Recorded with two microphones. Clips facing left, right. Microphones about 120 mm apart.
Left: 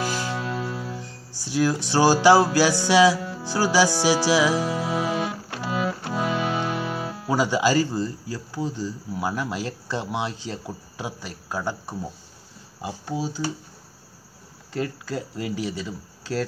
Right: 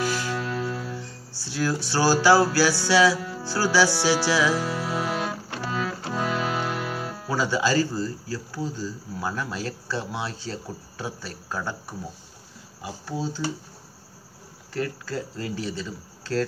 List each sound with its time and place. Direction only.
0.0 s music: 20° left (ahead or behind)
6.9 s speech: 10° left (ahead or behind)
13.2 s speech: 10° left (ahead or behind)
14.7 s speech: 20° left (ahead or behind)